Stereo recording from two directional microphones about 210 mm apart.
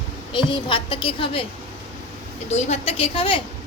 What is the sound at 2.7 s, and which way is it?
Speech, 30° left (ahead or behind).